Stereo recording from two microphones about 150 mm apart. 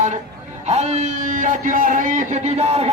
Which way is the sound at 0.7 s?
45° right (ahead or behind).